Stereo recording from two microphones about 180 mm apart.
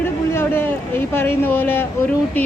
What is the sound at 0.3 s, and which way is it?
A woman's voice, 10° left (ahead or behind).